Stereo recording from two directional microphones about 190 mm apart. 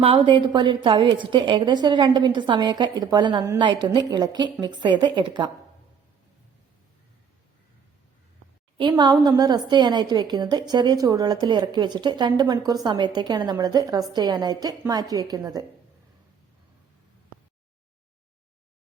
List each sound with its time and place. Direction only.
0.0 s a woman's voice: 30° right (ahead or behind)
8.8 s a woman's voice: 25° right (ahead or behind)